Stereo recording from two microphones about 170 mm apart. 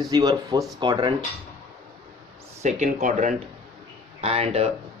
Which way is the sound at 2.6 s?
45° right (ahead or behind).